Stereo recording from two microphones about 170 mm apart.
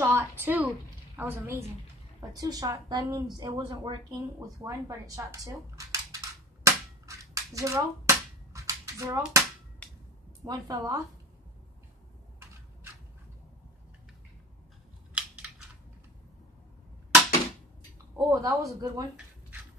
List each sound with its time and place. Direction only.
0.0 s a woman's voice: 15° right (ahead or behind)
6.6 s cap gun: 20° right (ahead or behind)
10.4 s speech: 20° right (ahead or behind)
18.1 s speech: 20° right (ahead or behind)